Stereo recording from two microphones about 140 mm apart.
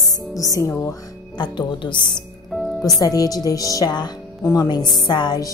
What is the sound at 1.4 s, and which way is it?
A woman's voice, 35° left (ahead or behind).